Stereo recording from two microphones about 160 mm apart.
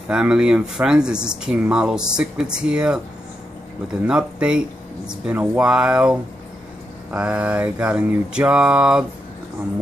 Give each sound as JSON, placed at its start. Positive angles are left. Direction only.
{"t": 0.1, "sound": "speech", "side_deg": -5}
{"t": 4.0, "sound": "speech", "side_deg": -5}
{"t": 7.1, "sound": "a sound", "side_deg": -10}